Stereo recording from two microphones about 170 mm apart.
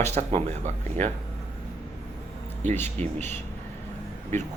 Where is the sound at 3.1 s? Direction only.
15° left (ahead or behind).